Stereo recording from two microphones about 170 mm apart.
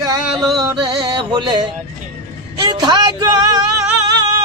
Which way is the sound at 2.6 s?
25° right (ahead or behind).